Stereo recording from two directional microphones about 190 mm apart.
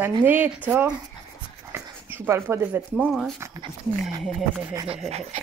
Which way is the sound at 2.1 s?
10° right (ahead or behind).